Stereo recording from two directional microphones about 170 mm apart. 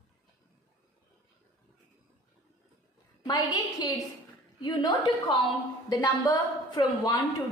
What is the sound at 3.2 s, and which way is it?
A woman's voice, 25° left (ahead or behind).